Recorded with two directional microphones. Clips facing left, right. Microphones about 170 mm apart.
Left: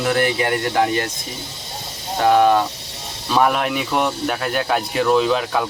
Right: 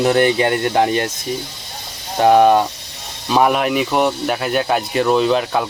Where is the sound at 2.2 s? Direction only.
20° right (ahead or behind).